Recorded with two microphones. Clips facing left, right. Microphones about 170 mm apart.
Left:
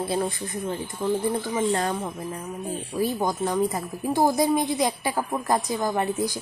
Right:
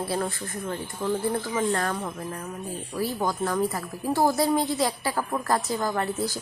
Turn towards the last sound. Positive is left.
turn(degrees=15)  # may be behind; listen again after turning